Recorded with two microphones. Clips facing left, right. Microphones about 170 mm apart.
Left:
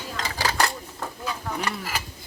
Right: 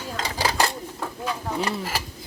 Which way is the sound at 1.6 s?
30° right (ahead or behind).